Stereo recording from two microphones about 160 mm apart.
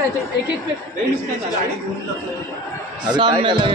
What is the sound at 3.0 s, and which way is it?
Speech, 25° right (ahead or behind).